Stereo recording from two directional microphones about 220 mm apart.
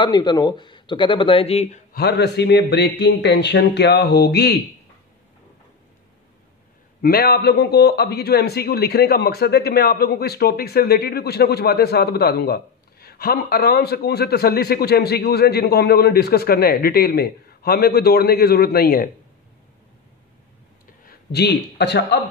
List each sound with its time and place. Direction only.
0.0 s a man's voice: 20° left (ahead or behind); by 4.6 s 45° left (ahead or behind)
7.0 s a man's voice: 45° left (ahead or behind)
21.0 s a man's voice: 45° left (ahead or behind)